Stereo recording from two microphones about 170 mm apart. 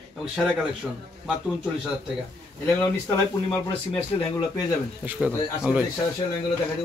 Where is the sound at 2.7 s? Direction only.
15° left (ahead or behind).